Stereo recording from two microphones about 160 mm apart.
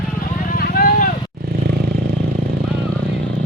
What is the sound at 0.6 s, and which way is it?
Vehicle, 65° left (ahead or behind).